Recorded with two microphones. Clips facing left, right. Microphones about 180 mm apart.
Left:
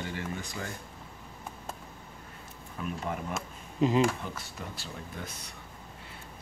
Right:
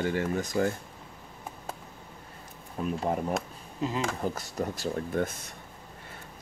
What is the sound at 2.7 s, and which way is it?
Speech, 35° right (ahead or behind).